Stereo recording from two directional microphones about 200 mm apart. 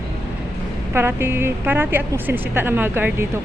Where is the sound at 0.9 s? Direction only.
10° right (ahead or behind).